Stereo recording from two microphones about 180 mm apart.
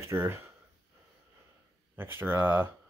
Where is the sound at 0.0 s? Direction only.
15° right (ahead or behind).